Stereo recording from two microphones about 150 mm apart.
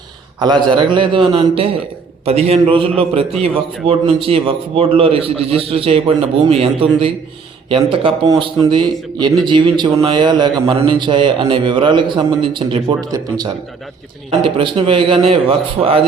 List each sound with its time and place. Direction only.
0.3 s a man's voice: 30° right (ahead or behind)
14.3 s a man's voice: 35° right (ahead or behind)